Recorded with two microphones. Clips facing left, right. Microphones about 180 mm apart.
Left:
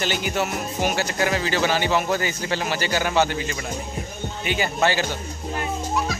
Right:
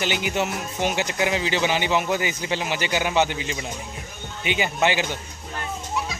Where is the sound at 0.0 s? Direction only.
15° right (ahead or behind).